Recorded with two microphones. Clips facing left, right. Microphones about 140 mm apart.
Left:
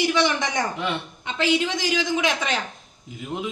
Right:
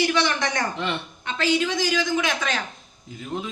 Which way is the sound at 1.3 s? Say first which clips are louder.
Even; 20° left (ahead or behind).